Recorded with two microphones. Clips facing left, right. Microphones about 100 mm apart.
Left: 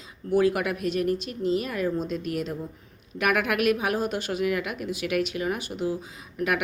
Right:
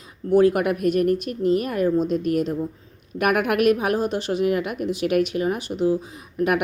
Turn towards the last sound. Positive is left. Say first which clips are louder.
# right 5 dB
turn(degrees=-45)  # may be behind; listen again after turning